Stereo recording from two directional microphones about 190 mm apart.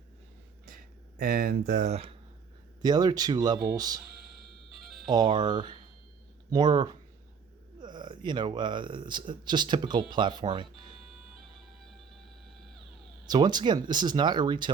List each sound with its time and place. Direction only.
0.6 s a sound: 45° right (ahead or behind)
2.8 s speech: 20° right (ahead or behind)
5.0 s speech: 20° right (ahead or behind)
13.2 s speech: 20° right (ahead or behind)